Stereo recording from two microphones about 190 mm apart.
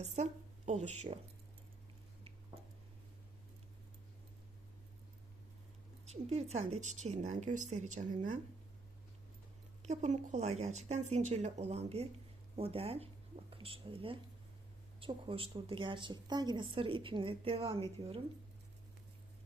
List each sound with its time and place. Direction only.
0.0 s a woman's voice: 35° right (ahead or behind)
6.1 s speech: 35° right (ahead or behind)
9.8 s a woman's voice: 40° right (ahead or behind)